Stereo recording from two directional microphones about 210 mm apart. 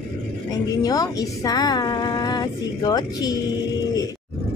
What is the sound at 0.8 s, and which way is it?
A woman's voice, 20° left (ahead or behind).